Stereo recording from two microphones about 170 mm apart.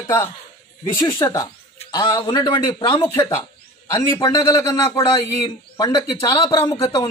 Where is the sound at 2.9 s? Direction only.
15° left (ahead or behind).